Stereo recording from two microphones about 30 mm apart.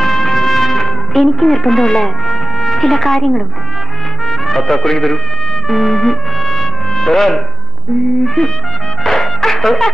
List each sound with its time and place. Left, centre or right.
0.0 s music: centre
1.3 s speech: centre
1.8 s music: left
4.3 s speech: centre
5.7 s music: centre
7.1 s speech: centre
8.4 s trumpet: centre
9.0 s music: centre